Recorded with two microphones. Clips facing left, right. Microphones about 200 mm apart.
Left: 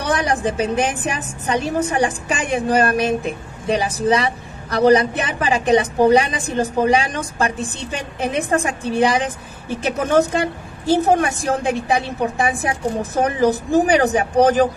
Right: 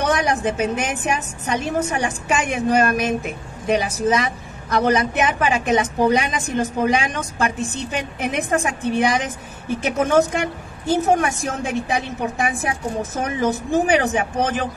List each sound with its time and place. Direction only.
0.0 s a woman's voice: 35° left (ahead or behind)